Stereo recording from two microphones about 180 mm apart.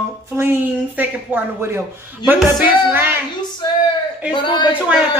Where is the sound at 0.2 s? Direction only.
15° right (ahead or behind).